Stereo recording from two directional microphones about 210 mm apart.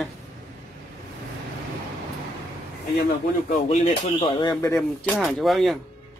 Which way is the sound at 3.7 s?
30° left (ahead or behind).